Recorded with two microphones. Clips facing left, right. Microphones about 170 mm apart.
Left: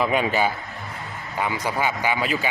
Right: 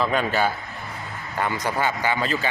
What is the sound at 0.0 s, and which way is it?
A man's voice, 10° left (ahead or behind).